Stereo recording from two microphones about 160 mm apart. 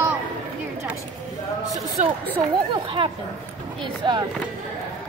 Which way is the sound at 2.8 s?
30° right (ahead or behind).